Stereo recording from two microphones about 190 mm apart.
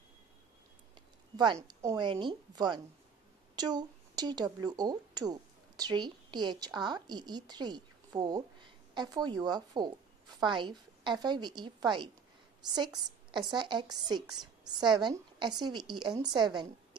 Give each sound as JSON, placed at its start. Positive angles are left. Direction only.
{"t": 1.3, "sound": "a woman's voice", "side_deg": -20}
{"t": 13.3, "sound": "a woman's voice", "side_deg": -25}